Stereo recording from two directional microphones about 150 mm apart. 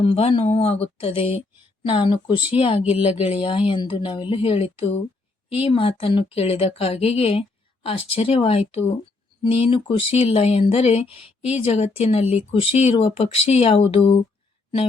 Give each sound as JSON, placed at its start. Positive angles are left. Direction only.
{"t": 0.0, "sound": "speech", "side_deg": 40}